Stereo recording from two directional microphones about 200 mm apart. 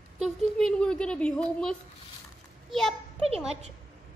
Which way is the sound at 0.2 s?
Centre (ahead or behind).